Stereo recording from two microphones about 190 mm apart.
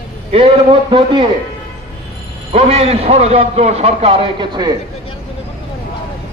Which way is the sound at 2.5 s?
30° right (ahead or behind).